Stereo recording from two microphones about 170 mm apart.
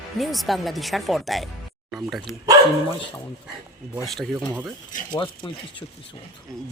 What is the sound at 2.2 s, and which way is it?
Speech, 20° right (ahead or behind).